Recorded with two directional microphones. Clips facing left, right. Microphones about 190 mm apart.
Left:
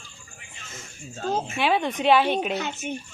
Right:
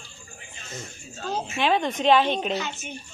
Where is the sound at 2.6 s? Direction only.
55° left (ahead or behind).